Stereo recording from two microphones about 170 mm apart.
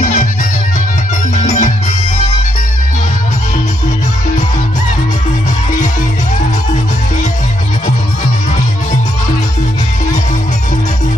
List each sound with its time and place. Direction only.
0.0 s music: 45° left (ahead or behind)
1.3 s music: 45° left (ahead or behind)